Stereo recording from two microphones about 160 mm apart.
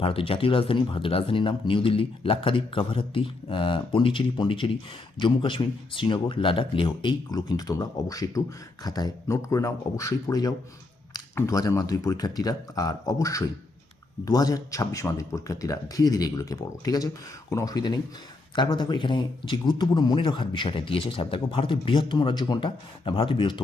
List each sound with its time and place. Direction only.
0.0 s a man's voice: 35° left (ahead or behind)